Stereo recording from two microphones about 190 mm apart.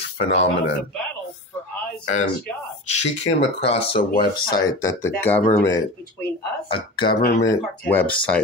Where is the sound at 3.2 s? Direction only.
30° left (ahead or behind).